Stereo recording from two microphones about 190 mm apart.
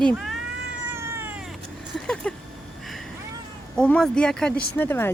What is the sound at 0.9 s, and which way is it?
Cat, 15° right (ahead or behind).